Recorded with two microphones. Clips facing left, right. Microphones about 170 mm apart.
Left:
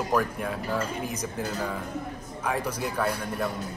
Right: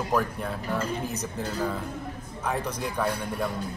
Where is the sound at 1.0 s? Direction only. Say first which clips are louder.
Even; 10° left (ahead or behind).